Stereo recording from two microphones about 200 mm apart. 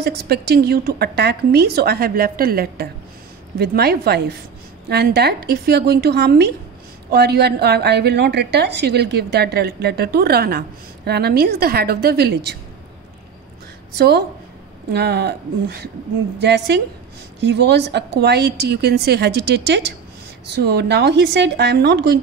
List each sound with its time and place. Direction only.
0.0 s a woman's voice: 55° right (ahead or behind)
13.9 s a woman's voice: 55° right (ahead or behind)